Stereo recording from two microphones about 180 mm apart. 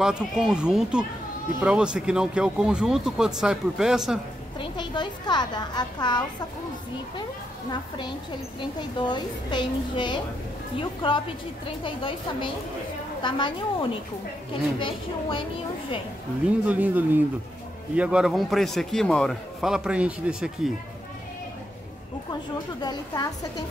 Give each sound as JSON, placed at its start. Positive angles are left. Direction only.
{"t": 0.0, "sound": "a man's voice", "side_deg": -5}
{"t": 4.6, "sound": "speech", "side_deg": 25}
{"t": 8.5, "sound": "speech", "side_deg": 25}
{"t": 16.6, "sound": "a man's voice", "side_deg": -10}
{"t": 22.3, "sound": "speech", "side_deg": 20}